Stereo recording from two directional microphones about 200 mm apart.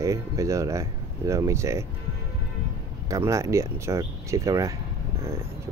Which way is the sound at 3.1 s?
15° right (ahead or behind).